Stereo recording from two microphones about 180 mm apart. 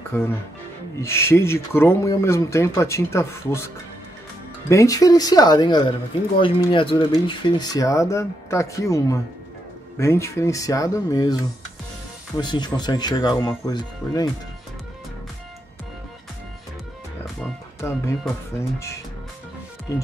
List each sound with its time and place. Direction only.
0.1 s speech: 10° left (ahead or behind)
12.4 s speech: 25° left (ahead or behind)
17.7 s speech: 15° left (ahead or behind)